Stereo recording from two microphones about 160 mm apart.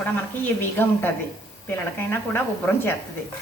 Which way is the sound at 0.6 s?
15° left (ahead or behind).